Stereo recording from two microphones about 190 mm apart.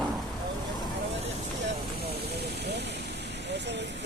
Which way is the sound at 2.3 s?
60° right (ahead or behind).